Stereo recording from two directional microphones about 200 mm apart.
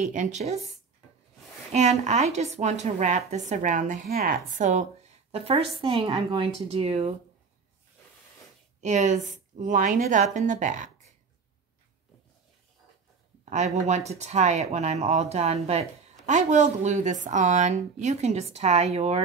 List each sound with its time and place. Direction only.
0.0 s a woman's voice: 35° right (ahead or behind)
1.7 s a woman's voice: 35° right (ahead or behind)
8.8 s a woman's voice: 35° right (ahead or behind)
13.5 s a woman's voice: 35° right (ahead or behind)